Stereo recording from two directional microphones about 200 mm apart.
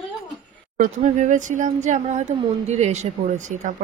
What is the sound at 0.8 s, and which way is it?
A woman's voice, 40° right (ahead or behind).